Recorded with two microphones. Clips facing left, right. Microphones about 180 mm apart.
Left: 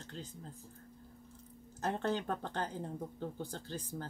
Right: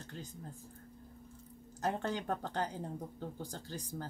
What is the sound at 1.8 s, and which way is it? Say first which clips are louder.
Speech: left 1 dB; 10° right (ahead or behind).